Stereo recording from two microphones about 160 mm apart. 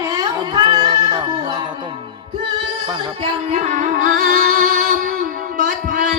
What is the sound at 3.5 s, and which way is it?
Music, 45° right (ahead or behind).